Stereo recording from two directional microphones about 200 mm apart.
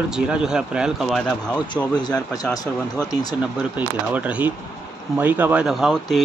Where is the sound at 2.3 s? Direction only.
20° left (ahead or behind).